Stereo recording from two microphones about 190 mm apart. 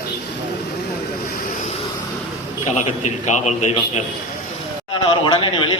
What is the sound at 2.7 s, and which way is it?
A man's voice, 40° left (ahead or behind).